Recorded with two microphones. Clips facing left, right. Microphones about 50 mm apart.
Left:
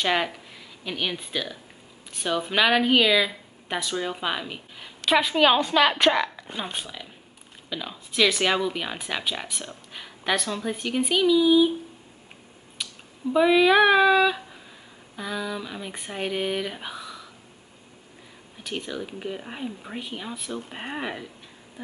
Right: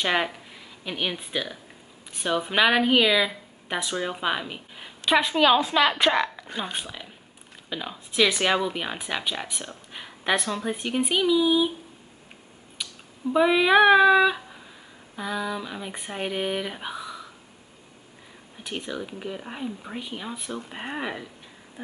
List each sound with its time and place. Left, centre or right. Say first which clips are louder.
0.0 s speech: even; centre
5.3 s a woman's voice: even; centre
5.8 s speech: left 1 dB; centre
9.9 s a sound: right 1 dB; centre
10.3 s speech: right 1 dB; centre
13.3 s speech: left 1 dB; centre
18.6 s speech: even; centre
19.0 s speech: left 1 dB; centre
20.3 s speech: left 1 dB; centre
20.7 s speech: right 2 dB; centre
21.8 s a sound: even; right